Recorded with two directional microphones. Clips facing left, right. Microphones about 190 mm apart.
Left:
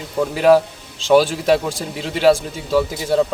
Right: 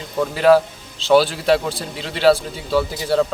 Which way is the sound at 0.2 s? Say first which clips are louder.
Left 1 dB; 10° left (ahead or behind).